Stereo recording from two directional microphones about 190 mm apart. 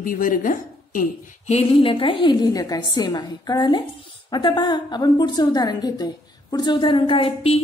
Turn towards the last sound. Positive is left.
turn(degrees=30)  # may be behind; listen again after turning